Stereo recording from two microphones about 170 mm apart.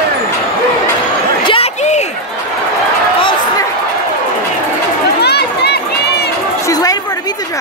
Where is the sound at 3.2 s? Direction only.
30° left (ahead or behind).